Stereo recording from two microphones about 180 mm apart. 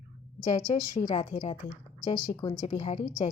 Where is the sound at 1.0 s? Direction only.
40° left (ahead or behind).